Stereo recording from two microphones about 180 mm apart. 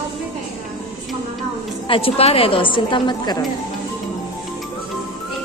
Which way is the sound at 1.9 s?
30° left (ahead or behind).